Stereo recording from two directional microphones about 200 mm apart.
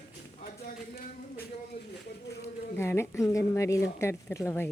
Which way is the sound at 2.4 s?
10° left (ahead or behind).